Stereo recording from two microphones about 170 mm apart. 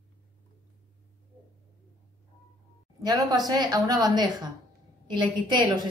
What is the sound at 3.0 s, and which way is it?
A woman's voice, 25° right (ahead or behind).